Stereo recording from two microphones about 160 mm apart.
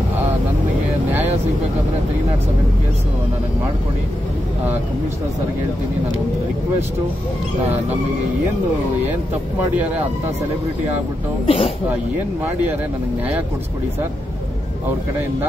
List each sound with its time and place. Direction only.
11.4 s speech: 35° left (ahead or behind)